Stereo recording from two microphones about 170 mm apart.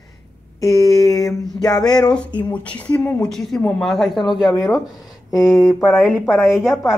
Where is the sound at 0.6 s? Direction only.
20° left (ahead or behind).